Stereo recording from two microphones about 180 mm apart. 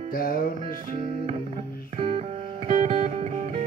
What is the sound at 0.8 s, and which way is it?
Music, 40° right (ahead or behind).